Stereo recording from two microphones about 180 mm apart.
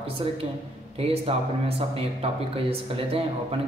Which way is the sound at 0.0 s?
30° right (ahead or behind).